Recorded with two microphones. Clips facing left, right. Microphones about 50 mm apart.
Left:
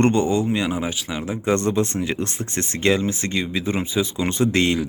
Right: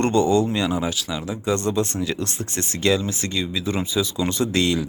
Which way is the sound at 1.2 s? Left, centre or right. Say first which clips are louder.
Left 4 dB; left.